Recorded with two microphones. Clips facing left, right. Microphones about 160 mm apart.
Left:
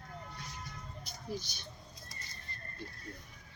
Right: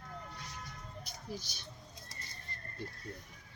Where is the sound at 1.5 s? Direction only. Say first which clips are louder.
Left 1 dB; 5° right (ahead or behind).